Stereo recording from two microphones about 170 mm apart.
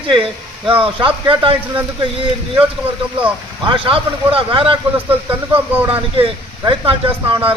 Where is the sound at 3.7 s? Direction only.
30° right (ahead or behind).